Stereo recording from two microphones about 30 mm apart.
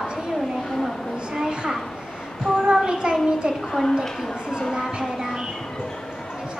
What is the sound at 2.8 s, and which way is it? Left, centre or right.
Speech, right.